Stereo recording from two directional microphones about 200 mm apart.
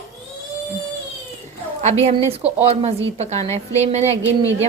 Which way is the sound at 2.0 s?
30° right (ahead or behind).